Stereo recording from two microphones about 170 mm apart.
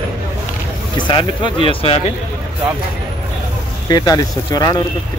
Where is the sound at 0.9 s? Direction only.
25° left (ahead or behind).